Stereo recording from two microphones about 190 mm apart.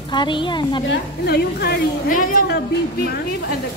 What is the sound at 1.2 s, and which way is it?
A woman's voice, 55° left (ahead or behind).